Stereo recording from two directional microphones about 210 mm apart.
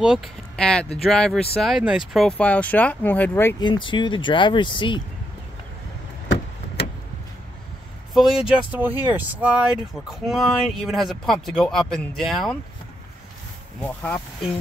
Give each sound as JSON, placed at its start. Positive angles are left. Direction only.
{"t": 0.0, "sound": "speech", "side_deg": 0}
{"t": 3.6, "sound": "speech", "side_deg": 20}
{"t": 6.2, "sound": "vehicle", "side_deg": 55}
{"t": 8.1, "sound": "speech", "side_deg": 0}
{"t": 13.8, "sound": "speech", "side_deg": 10}